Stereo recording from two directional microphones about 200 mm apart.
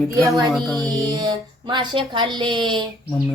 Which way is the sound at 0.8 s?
20° right (ahead or behind).